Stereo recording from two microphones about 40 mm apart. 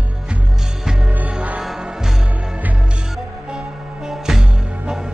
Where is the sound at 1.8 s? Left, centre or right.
Centre.